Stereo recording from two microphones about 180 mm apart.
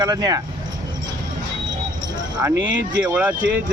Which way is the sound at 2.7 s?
90° right.